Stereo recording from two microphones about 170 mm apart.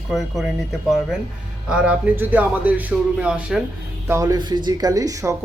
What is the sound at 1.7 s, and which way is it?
Speech, 5° right (ahead or behind).